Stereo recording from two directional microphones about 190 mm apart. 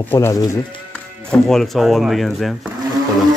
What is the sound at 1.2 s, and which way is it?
Speech, 5° left (ahead or behind).